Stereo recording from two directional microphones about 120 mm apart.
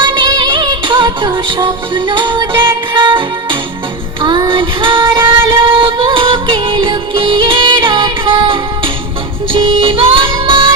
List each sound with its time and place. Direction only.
0.0 s music: 35° right (ahead or behind)